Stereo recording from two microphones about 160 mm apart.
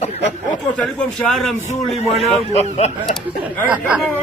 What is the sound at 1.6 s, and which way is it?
A man's voice, 45° left (ahead or behind).